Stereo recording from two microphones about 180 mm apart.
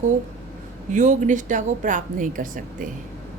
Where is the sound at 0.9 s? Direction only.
45° right (ahead or behind).